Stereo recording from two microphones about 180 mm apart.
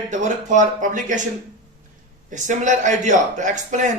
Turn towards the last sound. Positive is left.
turn(degrees=-45)  # may be behind; listen again after turning